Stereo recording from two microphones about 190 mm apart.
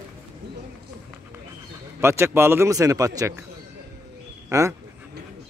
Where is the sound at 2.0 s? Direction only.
15° right (ahead or behind).